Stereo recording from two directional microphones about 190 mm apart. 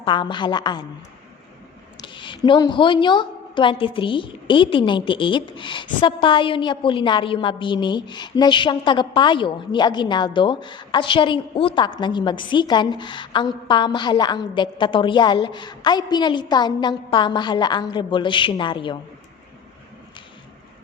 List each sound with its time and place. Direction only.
0.0 s a woman's voice: 25° left (ahead or behind)
2.1 s a woman's voice: 25° left (ahead or behind)